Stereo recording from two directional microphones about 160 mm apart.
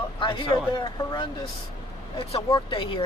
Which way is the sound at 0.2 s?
30° left (ahead or behind).